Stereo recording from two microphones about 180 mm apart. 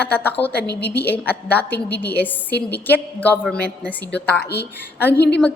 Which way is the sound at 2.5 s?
65° left (ahead or behind).